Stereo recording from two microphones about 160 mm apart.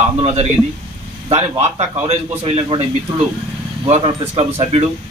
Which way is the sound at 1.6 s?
40° right (ahead or behind).